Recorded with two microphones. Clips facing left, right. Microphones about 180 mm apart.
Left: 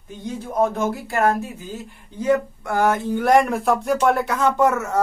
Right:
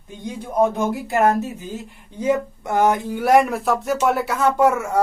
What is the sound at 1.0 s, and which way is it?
Speech, 20° right (ahead or behind).